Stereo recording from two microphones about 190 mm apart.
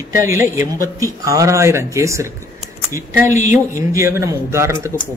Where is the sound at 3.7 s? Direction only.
15° right (ahead or behind).